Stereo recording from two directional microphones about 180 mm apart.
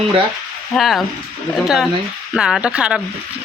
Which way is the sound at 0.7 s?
Centre (ahead or behind).